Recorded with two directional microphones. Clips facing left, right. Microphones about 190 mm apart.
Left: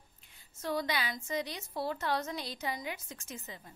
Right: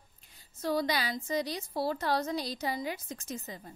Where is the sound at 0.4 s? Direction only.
35° right (ahead or behind).